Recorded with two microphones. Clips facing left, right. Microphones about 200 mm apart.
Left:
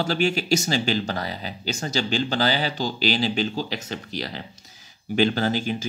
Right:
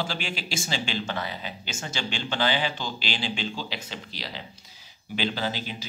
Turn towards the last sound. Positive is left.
turn(degrees=50)  # may be behind; listen again after turning